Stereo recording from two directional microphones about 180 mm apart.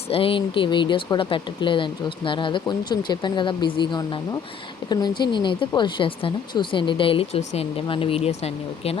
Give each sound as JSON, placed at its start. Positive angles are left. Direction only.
{"t": 0.1, "sound": "speech", "side_deg": 30}